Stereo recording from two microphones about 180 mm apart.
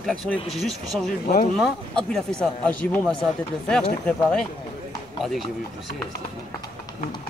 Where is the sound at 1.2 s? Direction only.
55° left (ahead or behind).